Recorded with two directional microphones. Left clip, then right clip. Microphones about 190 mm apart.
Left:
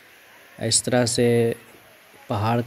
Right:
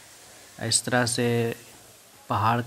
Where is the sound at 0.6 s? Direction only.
10° left (ahead or behind).